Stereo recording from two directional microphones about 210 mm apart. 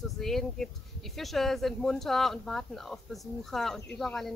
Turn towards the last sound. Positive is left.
turn(degrees=0)  # may be behind; listen again after turning